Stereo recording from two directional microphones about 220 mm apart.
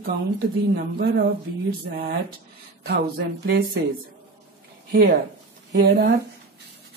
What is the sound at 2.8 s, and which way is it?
Speech, 50° right (ahead or behind).